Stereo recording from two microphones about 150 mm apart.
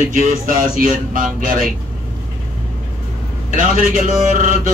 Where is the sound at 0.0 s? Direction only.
55° right (ahead or behind).